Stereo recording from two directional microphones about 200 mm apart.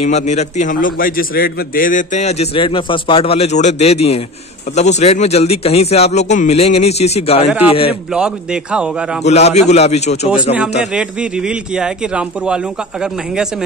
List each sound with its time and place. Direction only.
0.0 s a man's voice: 35° left (ahead or behind)
7.4 s a man's voice: 5° right (ahead or behind)
9.2 s a man's voice: 35° left (ahead or behind)
10.8 s a man's voice: 5° right (ahead or behind)